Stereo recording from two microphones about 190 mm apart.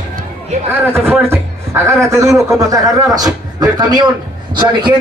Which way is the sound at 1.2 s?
15° right (ahead or behind).